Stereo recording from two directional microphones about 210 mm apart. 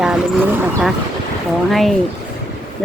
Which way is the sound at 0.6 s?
Centre (ahead or behind).